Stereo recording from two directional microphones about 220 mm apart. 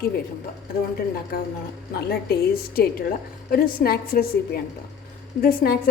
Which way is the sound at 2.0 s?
45° left (ahead or behind).